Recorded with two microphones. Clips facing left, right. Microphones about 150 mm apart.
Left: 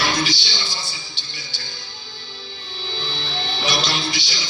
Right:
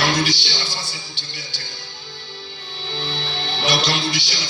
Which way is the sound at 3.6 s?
65° right (ahead or behind).